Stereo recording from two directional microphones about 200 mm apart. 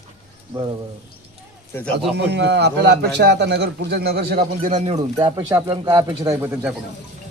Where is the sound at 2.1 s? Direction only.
55° right (ahead or behind).